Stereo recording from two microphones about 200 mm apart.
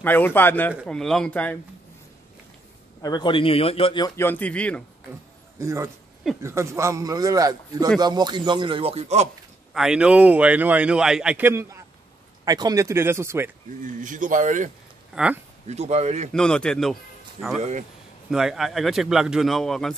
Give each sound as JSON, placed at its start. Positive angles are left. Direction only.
{"t": 0.0, "sound": "a man's voice", "side_deg": 10}
{"t": 3.0, "sound": "speech", "side_deg": 20}
{"t": 4.2, "sound": "a man's voice", "side_deg": 10}
{"t": 5.6, "sound": "a man's voice", "side_deg": -15}
{"t": 9.8, "sound": "a man's voice", "side_deg": -5}
{"t": 13.8, "sound": "speech", "side_deg": -40}
{"t": 15.2, "sound": "a man's voice", "side_deg": -5}
{"t": 15.6, "sound": "speech", "side_deg": -35}
{"t": 16.3, "sound": "speech", "side_deg": 5}
{"t": 17.6, "sound": "speech", "side_deg": -35}
{"t": 18.3, "sound": "a man's voice", "side_deg": 0}